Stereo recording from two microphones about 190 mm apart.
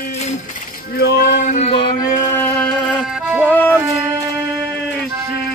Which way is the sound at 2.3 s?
5° left (ahead or behind).